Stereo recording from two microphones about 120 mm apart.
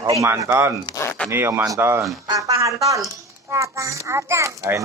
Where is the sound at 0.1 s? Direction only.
25° right (ahead or behind).